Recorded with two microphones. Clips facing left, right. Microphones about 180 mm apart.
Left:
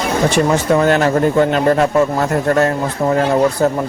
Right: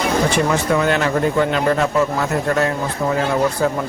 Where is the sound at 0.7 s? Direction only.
40° left (ahead or behind).